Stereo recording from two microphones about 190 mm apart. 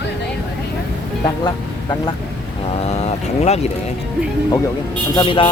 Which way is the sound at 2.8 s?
35° left (ahead or behind).